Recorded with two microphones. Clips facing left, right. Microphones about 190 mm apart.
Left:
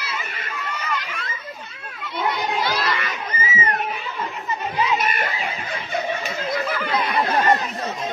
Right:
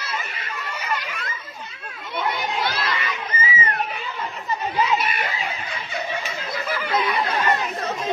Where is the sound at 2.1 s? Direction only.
55° right (ahead or behind).